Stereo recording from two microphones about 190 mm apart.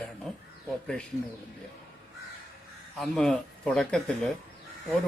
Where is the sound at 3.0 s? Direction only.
5° left (ahead or behind).